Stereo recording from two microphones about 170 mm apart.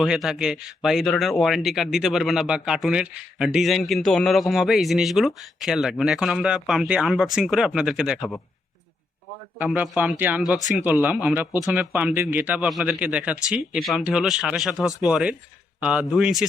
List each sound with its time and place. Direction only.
0.0 s speech: centre (ahead or behind)
9.6 s speech: 5° right (ahead or behind)
10.6 s speech: 45° left (ahead or behind)
11.0 s speech: 10° right (ahead or behind)